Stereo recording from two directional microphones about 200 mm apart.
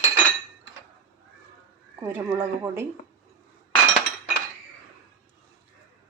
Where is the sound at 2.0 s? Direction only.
10° right (ahead or behind).